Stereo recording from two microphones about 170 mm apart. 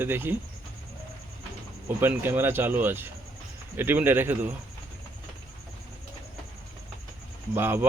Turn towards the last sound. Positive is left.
turn(degrees=-15)  # may be behind; listen again after turning